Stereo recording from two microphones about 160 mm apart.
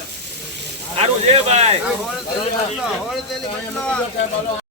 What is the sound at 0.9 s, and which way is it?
Speech, 45° right (ahead or behind).